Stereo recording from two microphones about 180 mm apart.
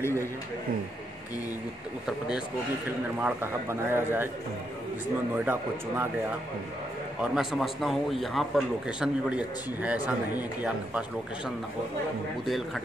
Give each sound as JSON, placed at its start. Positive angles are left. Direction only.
{"t": 0.0, "sound": "a man's voice", "side_deg": 15}
{"t": 2.0, "sound": "speech", "side_deg": -5}
{"t": 5.4, "sound": "speech", "side_deg": -10}
{"t": 7.3, "sound": "speech", "side_deg": 0}